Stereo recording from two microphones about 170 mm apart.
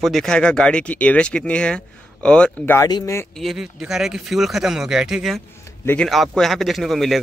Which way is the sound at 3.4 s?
Centre (ahead or behind).